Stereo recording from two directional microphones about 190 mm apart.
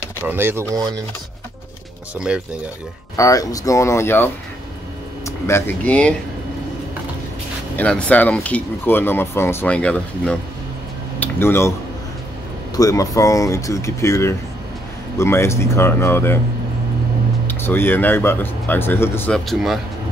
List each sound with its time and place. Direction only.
0.3 s speech: 10° right (ahead or behind)
2.1 s speech: 5° right (ahead or behind)
3.2 s speech: 20° left (ahead or behind)
7.7 s speech: 5° left (ahead or behind)
11.1 s a sound: 10° left (ahead or behind)
12.7 s speech: 20° left (ahead or behind)
17.5 s speech: 10° left (ahead or behind)